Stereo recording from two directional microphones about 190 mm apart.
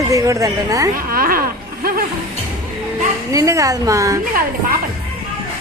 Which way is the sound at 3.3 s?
15° right (ahead or behind).